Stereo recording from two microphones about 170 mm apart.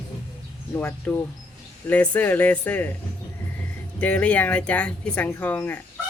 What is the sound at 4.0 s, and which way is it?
Speech, 10° left (ahead or behind).